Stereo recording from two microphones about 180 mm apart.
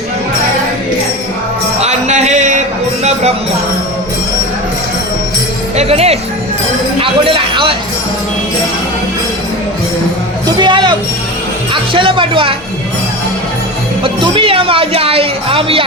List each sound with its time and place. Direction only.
1.8 s music: 40° right (ahead or behind)
5.7 s music: 35° right (ahead or behind)
7.0 s a sound: 30° right (ahead or behind)
10.4 s music: 25° right (ahead or behind)
11.7 s speech: 30° right (ahead or behind)
14.0 s speech: 30° right (ahead or behind)